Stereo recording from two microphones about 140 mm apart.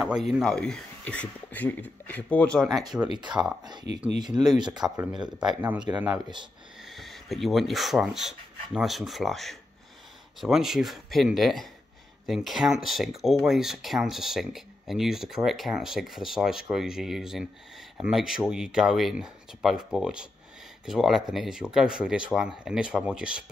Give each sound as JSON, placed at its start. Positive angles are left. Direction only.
{"t": 0.0, "sound": "a man's voice", "side_deg": -5}
{"t": 3.3, "sound": "speech", "side_deg": -5}
{"t": 3.6, "sound": "speech", "side_deg": -30}
{"t": 5.1, "sound": "speech", "side_deg": -5}